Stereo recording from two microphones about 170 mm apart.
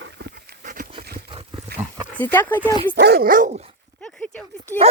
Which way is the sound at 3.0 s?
70° right (ahead or behind).